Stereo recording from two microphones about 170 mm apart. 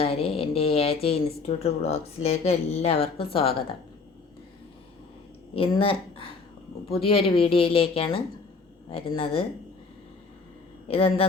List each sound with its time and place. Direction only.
0.0 s speech: 35° left (ahead or behind)
5.5 s speech: 30° left (ahead or behind)
10.8 s speech: 35° left (ahead or behind)